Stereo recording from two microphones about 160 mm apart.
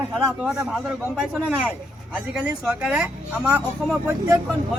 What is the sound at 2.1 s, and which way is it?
Speech, 10° right (ahead or behind).